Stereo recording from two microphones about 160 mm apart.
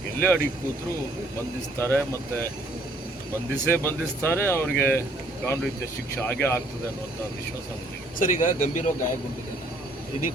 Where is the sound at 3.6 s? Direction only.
15° left (ahead or behind).